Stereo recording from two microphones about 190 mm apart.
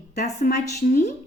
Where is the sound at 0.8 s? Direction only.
40° left (ahead or behind).